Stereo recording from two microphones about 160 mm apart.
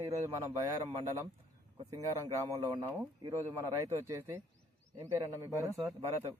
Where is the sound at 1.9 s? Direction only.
20° right (ahead or behind).